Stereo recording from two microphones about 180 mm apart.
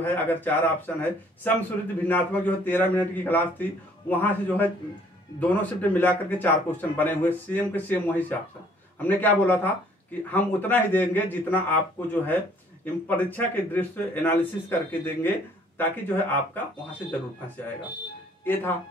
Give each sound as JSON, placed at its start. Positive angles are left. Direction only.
{"t": 0.0, "sound": "speech", "side_deg": 10}
{"t": 18.4, "sound": "speech", "side_deg": 10}